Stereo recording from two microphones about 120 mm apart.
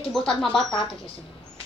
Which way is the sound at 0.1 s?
Centre (ahead or behind).